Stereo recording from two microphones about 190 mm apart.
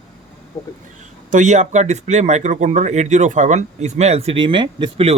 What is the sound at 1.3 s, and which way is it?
Speech, 40° right (ahead or behind).